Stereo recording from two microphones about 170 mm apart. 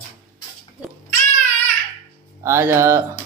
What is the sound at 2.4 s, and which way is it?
Speech, 15° right (ahead or behind).